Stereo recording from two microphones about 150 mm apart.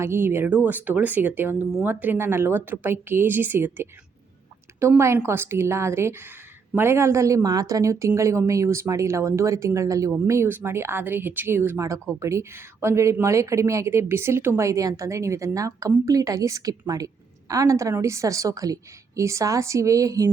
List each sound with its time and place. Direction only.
0.0 s a woman's voice: 15° right (ahead or behind)